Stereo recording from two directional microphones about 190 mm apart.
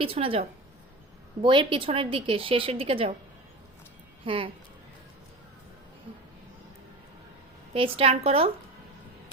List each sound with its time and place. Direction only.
0.0 s a woman's voice: 30° right (ahead or behind)
4.3 s a woman's voice: 30° right (ahead or behind)
7.7 s a woman's voice: 30° right (ahead or behind)